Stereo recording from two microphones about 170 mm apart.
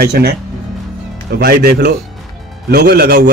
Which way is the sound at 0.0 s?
70° right (ahead or behind).